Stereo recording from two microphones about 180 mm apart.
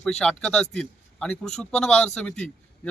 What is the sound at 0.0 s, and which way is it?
Speech, 5° left (ahead or behind).